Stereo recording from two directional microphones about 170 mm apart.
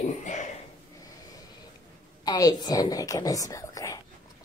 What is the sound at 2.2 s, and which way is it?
A woman's voice, 25° left (ahead or behind).